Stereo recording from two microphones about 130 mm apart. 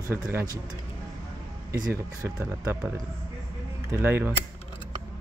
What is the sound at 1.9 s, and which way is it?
Speech, 20° right (ahead or behind).